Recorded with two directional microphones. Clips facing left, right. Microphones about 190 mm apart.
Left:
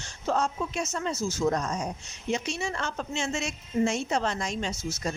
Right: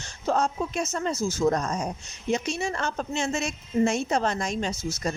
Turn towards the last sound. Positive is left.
turn(degrees=-40)  # may be behind; listen again after turning